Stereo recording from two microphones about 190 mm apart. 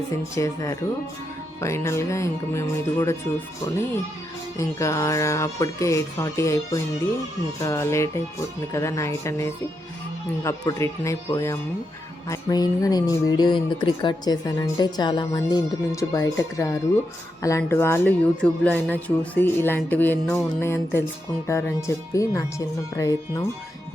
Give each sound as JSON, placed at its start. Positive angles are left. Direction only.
{"t": 0.3, "sound": "speech", "side_deg": 15}
{"t": 4.5, "sound": "speech", "side_deg": 15}